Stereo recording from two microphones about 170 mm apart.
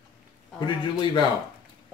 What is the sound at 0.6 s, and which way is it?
Speech, 25° left (ahead or behind).